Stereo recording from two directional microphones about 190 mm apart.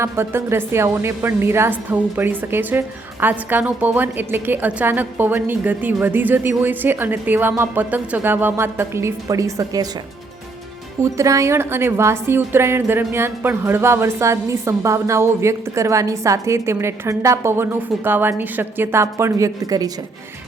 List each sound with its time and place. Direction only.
0.0 s a woman's voice: 15° right (ahead or behind)
11.0 s a woman's voice: 15° right (ahead or behind)